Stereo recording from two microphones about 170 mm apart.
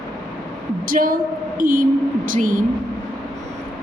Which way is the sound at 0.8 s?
55° right (ahead or behind).